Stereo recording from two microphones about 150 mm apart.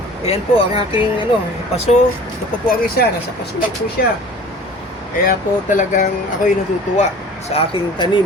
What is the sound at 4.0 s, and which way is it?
Speech, 80° left.